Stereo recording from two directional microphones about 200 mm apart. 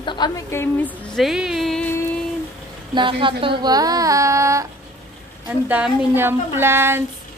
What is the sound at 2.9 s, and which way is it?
A woman's voice, 25° right (ahead or behind).